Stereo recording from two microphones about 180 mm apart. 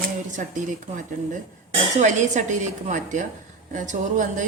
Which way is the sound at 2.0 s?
40° right (ahead or behind).